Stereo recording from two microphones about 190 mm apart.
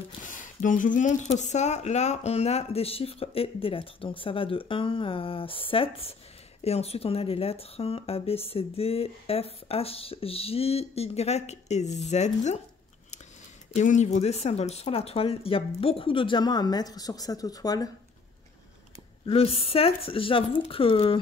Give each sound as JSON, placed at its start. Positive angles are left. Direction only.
{"t": 0.2, "sound": "speech", "side_deg": 45}
{"t": 13.7, "sound": "speech", "side_deg": 40}
{"t": 19.2, "sound": "speech", "side_deg": 30}